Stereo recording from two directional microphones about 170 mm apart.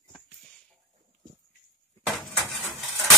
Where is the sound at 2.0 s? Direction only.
Centre (ahead or behind).